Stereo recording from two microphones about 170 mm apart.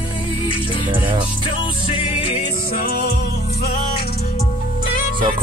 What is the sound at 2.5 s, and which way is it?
Music, 60° left (ahead or behind).